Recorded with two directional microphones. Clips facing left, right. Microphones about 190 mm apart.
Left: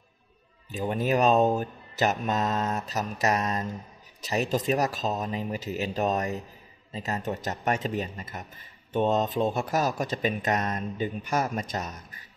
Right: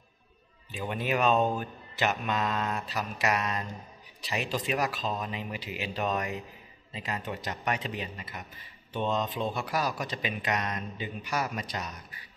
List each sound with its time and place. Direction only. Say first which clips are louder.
0.7 s speech: left 5 dB; 40° left (ahead or behind)